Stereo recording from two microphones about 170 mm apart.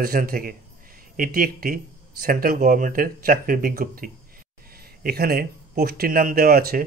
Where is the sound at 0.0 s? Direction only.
55° right (ahead or behind).